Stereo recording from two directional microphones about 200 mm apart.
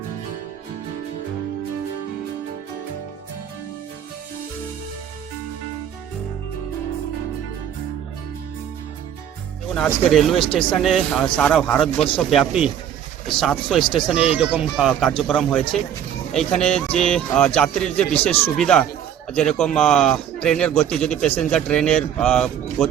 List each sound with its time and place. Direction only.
9.7 s speech: centre (ahead or behind)
10.4 s speech: 25° left (ahead or behind)
10.7 s speech: centre (ahead or behind)
13.8 s speech: 25° left (ahead or behind)
14.3 s speech: 5° right (ahead or behind)